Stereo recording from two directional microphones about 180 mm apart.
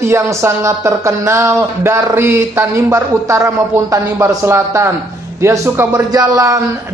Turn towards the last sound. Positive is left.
turn(degrees=-20)  # may be behind; listen again after turning